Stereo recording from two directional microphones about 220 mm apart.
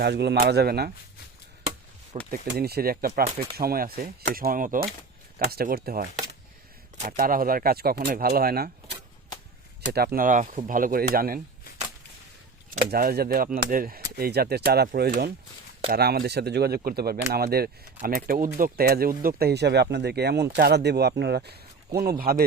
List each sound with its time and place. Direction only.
0.0 s speech: 50° right (ahead or behind)
2.3 s speech: 45° right (ahead or behind)
7.2 s speech: 40° right (ahead or behind)
9.8 s speech: 45° right (ahead or behind)
12.9 s speech: 45° right (ahead or behind)